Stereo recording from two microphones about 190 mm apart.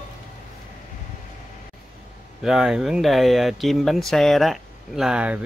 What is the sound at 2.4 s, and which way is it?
Speech, centre (ahead or behind).